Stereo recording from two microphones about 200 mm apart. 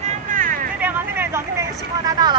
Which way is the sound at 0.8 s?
10° right (ahead or behind).